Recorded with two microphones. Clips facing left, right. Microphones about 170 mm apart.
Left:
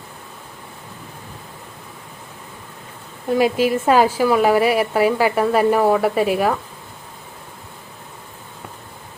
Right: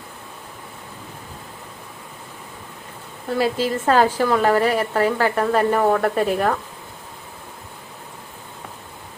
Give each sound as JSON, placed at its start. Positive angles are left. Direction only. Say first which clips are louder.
{"t": 3.3, "sound": "a woman's voice", "louder": "left 4 dB", "side_deg": 15}